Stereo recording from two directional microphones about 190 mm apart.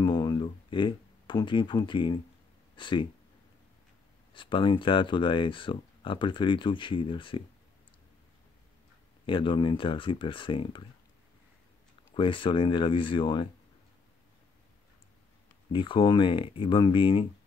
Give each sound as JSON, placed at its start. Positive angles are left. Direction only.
{"t": 0.0, "sound": "a sound", "side_deg": 20}
{"t": 2.7, "sound": "speech", "side_deg": 25}
{"t": 4.3, "sound": "speech", "side_deg": 25}
{"t": 9.2, "sound": "speech", "side_deg": 25}
{"t": 12.1, "sound": "speech", "side_deg": 25}
{"t": 15.7, "sound": "speech", "side_deg": 25}